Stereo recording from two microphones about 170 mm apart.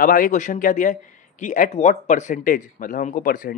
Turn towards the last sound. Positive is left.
turn(degrees=55)  # may be behind; listen again after turning